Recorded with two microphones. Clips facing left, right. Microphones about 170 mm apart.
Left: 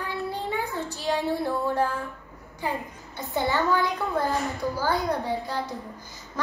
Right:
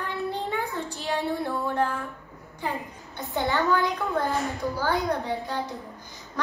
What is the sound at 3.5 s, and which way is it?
Child singing, centre (ahead or behind).